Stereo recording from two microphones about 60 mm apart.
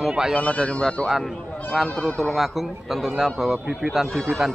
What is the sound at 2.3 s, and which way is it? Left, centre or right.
A man's voice, centre.